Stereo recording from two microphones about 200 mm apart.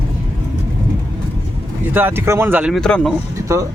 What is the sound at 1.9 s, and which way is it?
Speech, 10° right (ahead or behind).